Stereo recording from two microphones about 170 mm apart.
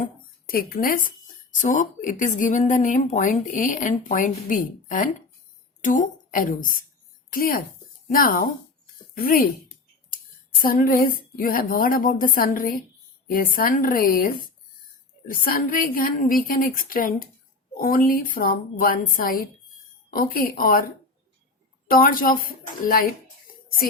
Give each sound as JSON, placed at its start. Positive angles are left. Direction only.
{"t": 0.0, "sound": "a woman's voice", "side_deg": 60}
{"t": 10.6, "sound": "a woman's voice", "side_deg": 60}
{"t": 21.8, "sound": "a woman's voice", "side_deg": 55}